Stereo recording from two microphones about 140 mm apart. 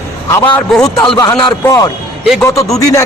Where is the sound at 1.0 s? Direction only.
30° left (ahead or behind).